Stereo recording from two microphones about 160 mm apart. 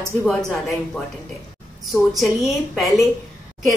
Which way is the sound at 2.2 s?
Centre (ahead or behind).